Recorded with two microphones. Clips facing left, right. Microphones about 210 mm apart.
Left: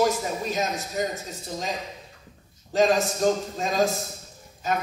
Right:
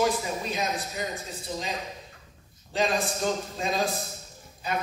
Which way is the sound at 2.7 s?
40° left (ahead or behind).